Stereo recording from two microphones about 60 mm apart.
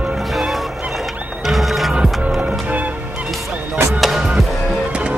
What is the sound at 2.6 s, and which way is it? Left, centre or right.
Music, right.